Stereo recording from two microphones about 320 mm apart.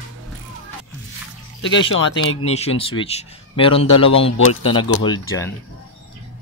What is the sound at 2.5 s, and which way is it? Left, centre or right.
Speech, centre.